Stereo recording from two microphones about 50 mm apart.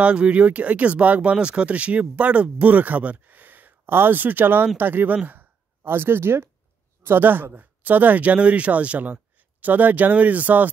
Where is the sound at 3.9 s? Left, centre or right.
Right.